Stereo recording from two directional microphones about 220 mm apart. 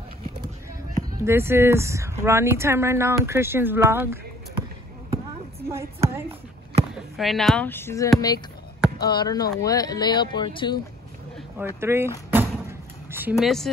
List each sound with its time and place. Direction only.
1.2 s speech: 10° right (ahead or behind)
5.7 s speech: 10° right (ahead or behind)
7.2 s speech: centre (ahead or behind); by 10.8 s 20° left (ahead or behind)
11.3 s speech: 10° right (ahead or behind)
12.3 s a sound: 10° right (ahead or behind)